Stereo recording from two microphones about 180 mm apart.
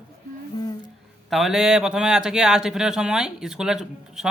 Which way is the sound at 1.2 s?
Centre (ahead or behind).